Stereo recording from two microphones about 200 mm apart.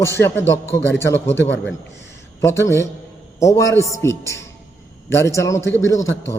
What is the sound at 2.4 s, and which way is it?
A man's voice, 15° left (ahead or behind).